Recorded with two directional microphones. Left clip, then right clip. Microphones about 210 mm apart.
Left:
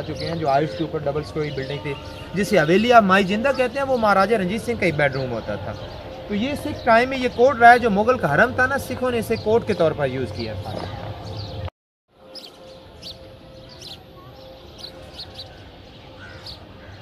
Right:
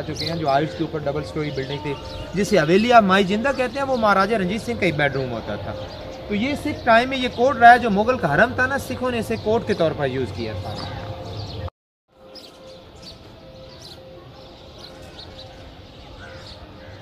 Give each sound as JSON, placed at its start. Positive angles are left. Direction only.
{"t": 0.3, "sound": "speech", "side_deg": 10}
{"t": 14.8, "sound": "basketball bounce", "side_deg": 25}